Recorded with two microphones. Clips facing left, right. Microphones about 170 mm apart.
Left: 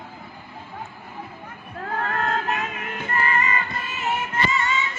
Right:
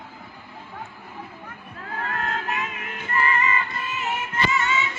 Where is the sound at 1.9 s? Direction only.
40° left (ahead or behind).